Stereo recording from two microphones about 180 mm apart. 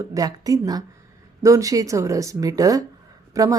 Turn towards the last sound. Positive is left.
turn(degrees=-20)  # may be behind; listen again after turning